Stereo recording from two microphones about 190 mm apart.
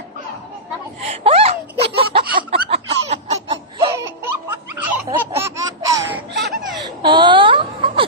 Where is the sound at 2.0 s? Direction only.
30° right (ahead or behind).